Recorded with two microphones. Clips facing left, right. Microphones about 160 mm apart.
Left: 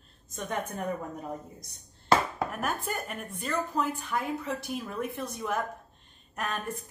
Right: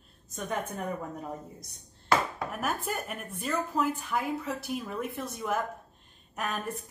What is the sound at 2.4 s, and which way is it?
A woman's voice, centre (ahead or behind).